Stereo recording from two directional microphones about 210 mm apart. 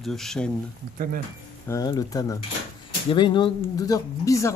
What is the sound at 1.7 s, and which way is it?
Speech, 15° left (ahead or behind).